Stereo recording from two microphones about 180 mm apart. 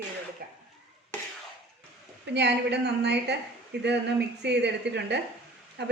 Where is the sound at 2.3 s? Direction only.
70° right (ahead or behind).